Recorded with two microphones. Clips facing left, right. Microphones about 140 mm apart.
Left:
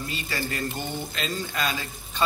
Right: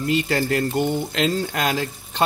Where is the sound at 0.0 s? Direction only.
70° right (ahead or behind).